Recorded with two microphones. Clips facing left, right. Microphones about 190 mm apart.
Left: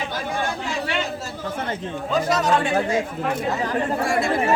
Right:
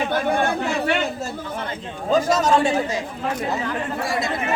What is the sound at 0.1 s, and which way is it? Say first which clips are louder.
Chatter: right 6 dB; 55° right (ahead or behind).